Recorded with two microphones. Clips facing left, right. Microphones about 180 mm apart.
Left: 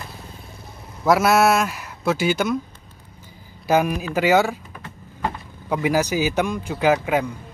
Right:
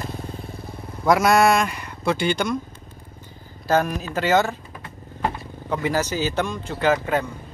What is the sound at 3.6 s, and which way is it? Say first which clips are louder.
Speech: left 2 dB; 10° left (ahead or behind).